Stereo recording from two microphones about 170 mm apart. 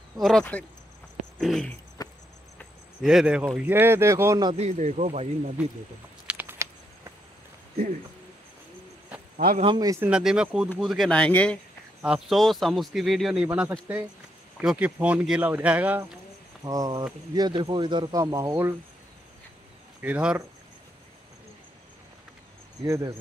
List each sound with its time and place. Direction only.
0.2 s speech: 5° left (ahead or behind)
2.0 s cricket: 25° left (ahead or behind)
3.0 s speech: centre (ahead or behind); by 4.6 s 20° right (ahead or behind)
4.6 s speech: 40° right (ahead or behind)
6.2 s a sound: 10° right (ahead or behind)
9.6 s speech: 25° right (ahead or behind)
10.0 s speech: 5° right (ahead or behind)
12.0 s speech: 5° right (ahead or behind)
16.6 s speech: 20° right (ahead or behind)
20.0 s speech: 5° right (ahead or behind)
22.8 s speech: 20° right (ahead or behind)